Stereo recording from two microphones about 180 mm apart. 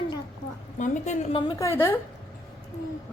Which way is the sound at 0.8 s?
40° left (ahead or behind).